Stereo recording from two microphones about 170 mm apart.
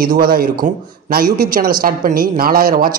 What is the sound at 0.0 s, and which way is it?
A man's voice, 60° right (ahead or behind).